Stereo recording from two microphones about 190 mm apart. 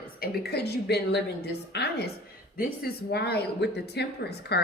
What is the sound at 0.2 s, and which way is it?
A woman's voice, 55° left (ahead or behind).